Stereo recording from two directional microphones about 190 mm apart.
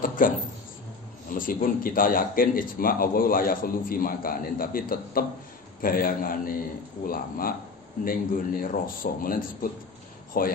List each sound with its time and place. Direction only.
0.0 s speech: 45° left (ahead or behind)
1.3 s a man's voice: 45° left (ahead or behind)